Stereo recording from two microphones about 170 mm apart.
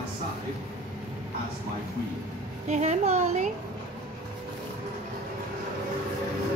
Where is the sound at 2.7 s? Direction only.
40° right (ahead or behind).